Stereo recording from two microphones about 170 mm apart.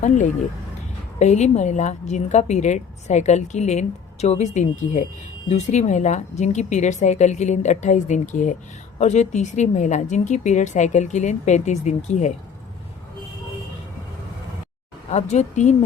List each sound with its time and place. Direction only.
1.2 s a woman's voice: 45° left (ahead or behind)
15.1 s a woman's voice: 40° left (ahead or behind)